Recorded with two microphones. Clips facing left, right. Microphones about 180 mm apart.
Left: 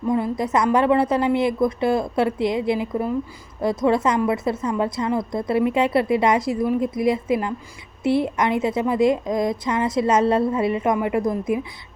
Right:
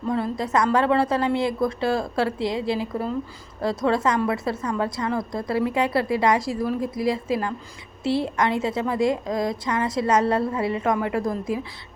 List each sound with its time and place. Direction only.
0.1 s a woman's voice: 20° left (ahead or behind)